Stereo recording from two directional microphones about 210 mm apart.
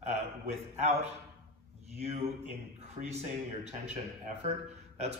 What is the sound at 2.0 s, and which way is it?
Speech, 30° right (ahead or behind).